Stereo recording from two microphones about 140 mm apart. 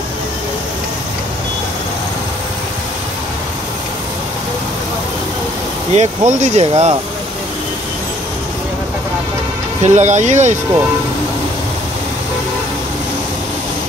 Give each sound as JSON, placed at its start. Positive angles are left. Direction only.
{"t": 5.9, "sound": "speech", "side_deg": -55}
{"t": 9.8, "sound": "speech", "side_deg": -55}